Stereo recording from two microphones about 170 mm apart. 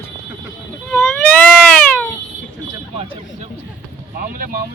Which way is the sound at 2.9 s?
30° right (ahead or behind).